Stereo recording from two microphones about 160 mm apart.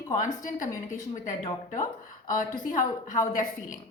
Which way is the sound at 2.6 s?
55° left (ahead or behind).